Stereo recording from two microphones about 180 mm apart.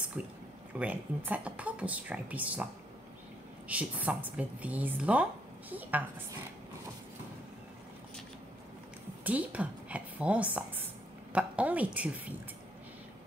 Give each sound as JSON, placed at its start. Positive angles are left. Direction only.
{"t": 0.7, "sound": "a woman's voice", "side_deg": -10}
{"t": 9.2, "sound": "a woman's voice", "side_deg": -10}